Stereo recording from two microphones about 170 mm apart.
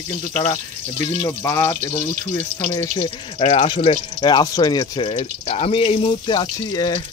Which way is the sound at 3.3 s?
35° left (ahead or behind).